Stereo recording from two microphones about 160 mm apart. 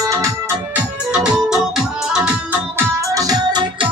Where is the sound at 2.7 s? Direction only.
20° right (ahead or behind).